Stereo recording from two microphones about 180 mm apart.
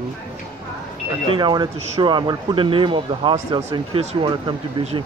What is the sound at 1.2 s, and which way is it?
Speech, 25° right (ahead or behind).